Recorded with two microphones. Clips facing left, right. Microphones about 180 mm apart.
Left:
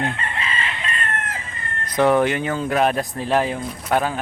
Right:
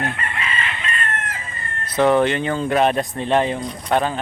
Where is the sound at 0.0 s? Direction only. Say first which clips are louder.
Left 1 dB; 30° left (ahead or behind).